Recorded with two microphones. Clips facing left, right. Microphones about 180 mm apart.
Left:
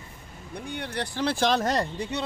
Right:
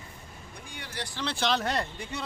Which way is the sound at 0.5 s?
60° left (ahead or behind).